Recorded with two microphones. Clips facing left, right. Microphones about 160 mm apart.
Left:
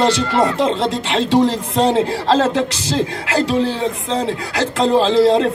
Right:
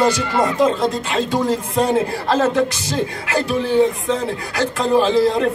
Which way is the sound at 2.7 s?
90° left.